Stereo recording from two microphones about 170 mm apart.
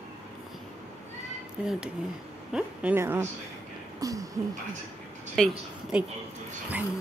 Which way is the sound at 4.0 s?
20° right (ahead or behind).